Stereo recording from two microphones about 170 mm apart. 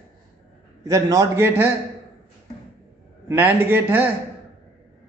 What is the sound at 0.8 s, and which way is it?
Speech, 20° right (ahead or behind).